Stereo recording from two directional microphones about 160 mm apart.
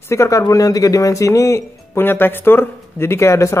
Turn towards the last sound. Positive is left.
turn(degrees=15)  # may be behind; listen again after turning